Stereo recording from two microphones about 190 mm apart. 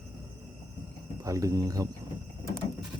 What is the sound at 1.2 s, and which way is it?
Speech, 15° right (ahead or behind).